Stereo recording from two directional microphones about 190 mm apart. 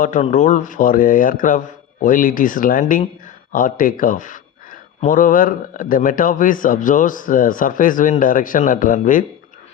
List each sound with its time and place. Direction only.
0.0 s a man's voice: 40° left (ahead or behind)